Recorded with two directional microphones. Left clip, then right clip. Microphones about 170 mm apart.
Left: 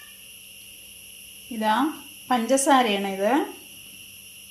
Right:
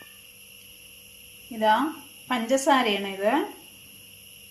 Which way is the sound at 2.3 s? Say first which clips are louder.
Left 2 dB; 30° left (ahead or behind).